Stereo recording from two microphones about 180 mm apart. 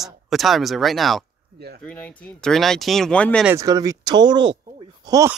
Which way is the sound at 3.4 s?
15° right (ahead or behind).